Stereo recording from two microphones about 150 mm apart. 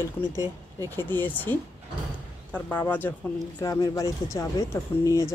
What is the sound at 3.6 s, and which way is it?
Speech, 25° left (ahead or behind).